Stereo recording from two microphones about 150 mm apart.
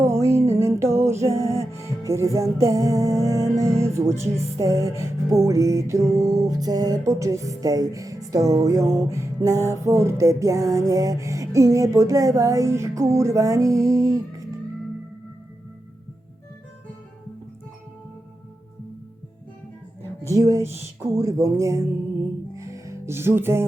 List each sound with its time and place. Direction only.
0.0 s music: 15° right (ahead or behind)
20.2 s music: 20° right (ahead or behind)